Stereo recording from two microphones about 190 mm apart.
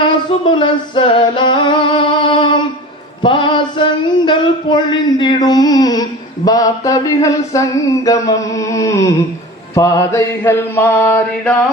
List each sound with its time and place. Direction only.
0.5 s singing: 25° left (ahead or behind)
3.2 s a sound: 25° left (ahead or behind)
9.7 s mantra: 15° left (ahead or behind)